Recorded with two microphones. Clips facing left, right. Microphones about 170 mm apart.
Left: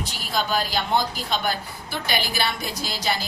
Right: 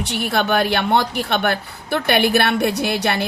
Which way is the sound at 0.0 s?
70° right (ahead or behind).